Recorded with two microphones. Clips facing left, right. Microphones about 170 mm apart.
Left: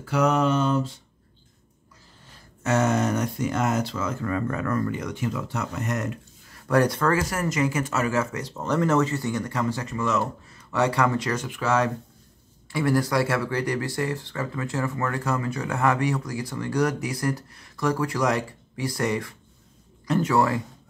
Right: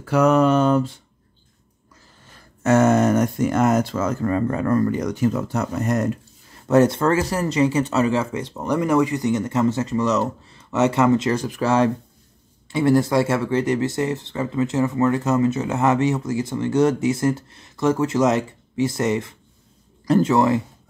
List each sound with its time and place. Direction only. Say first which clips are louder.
0.1 s a sound: right 6 dB; 50° right (ahead or behind)
2.6 s speech: right 7 dB; 50° right (ahead or behind)
6.7 s speech: right 5 dB; 25° right (ahead or behind)
9.8 s speech: right 5 dB; 35° right (ahead or behind)
10.7 s speech: right 6 dB; 20° right (ahead or behind)
11.3 s speech: right 5 dB; 35° right (ahead or behind)